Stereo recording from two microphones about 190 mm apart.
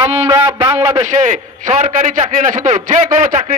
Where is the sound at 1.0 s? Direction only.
40° right (ahead or behind).